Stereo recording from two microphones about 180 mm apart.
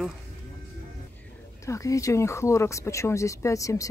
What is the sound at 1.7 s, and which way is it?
A woman's voice, 20° left (ahead or behind).